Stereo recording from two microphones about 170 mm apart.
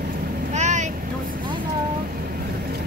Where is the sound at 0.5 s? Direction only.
45° right (ahead or behind).